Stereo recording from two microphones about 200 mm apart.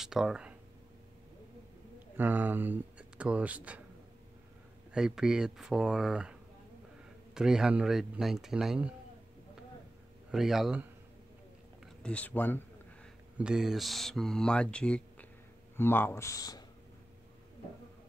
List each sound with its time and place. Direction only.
0.0 s speech: centre (ahead or behind)
2.1 s speech: 10° right (ahead or behind)
4.9 s speech: 5° right (ahead or behind)
7.3 s speech: 5° right (ahead or behind)
10.3 s speech: centre (ahead or behind)
13.4 s speech: 5° right (ahead or behind); by 16.6 s 20° left (ahead or behind)